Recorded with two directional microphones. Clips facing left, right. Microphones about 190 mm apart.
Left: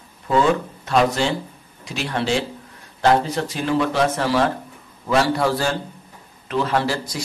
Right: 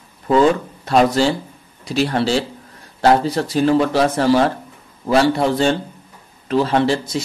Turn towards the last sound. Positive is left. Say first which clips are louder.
# right 5 dB
turn(degrees=-25)  # may be behind; listen again after turning